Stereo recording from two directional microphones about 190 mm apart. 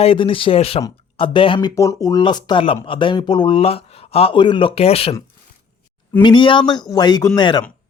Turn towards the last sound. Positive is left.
turn(degrees=20)  # may be behind; listen again after turning